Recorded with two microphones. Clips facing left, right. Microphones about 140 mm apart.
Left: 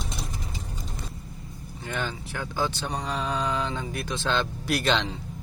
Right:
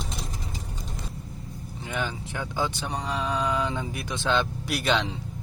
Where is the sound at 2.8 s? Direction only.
5° right (ahead or behind).